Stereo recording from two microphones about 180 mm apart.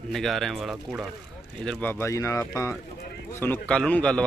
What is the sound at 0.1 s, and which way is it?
A man's voice, centre (ahead or behind).